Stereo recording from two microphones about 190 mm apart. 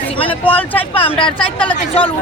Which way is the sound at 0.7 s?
30° left (ahead or behind).